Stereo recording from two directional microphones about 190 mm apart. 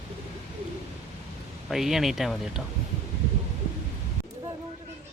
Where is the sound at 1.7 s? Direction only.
Centre (ahead or behind).